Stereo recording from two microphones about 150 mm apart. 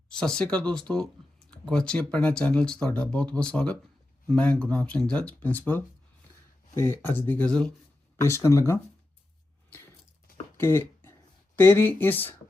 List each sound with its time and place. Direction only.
0.1 s speech: 5° left (ahead or behind)
8.1 s speech: 20° left (ahead or behind)
10.3 s a sound: 15° left (ahead or behind)
11.5 s speech: 15° left (ahead or behind)